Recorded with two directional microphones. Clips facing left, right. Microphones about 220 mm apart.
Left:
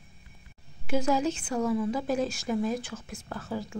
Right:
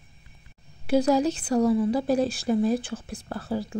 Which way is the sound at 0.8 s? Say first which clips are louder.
Right 5 dB; 35° right (ahead or behind).